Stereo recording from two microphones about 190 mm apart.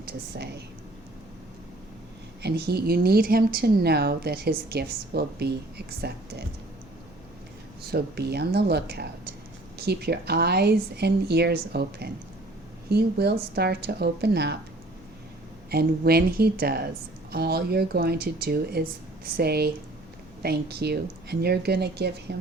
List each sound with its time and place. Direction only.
0.0 s speech: 55° right (ahead or behind)
2.4 s speech: 60° right (ahead or behind)
7.9 s speech: 55° right (ahead or behind)
15.7 s speech: 55° right (ahead or behind)